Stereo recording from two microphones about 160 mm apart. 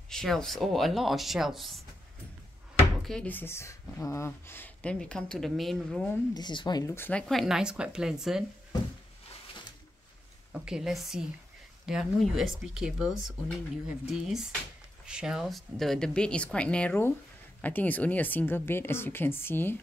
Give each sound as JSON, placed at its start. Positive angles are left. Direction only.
{"t": 0.1, "sound": "speech", "side_deg": 5}
{"t": 3.1, "sound": "speech", "side_deg": 10}
{"t": 6.3, "sound": "speech", "side_deg": 30}
{"t": 7.0, "sound": "speech", "side_deg": 10}
{"t": 10.5, "sound": "speech", "side_deg": -5}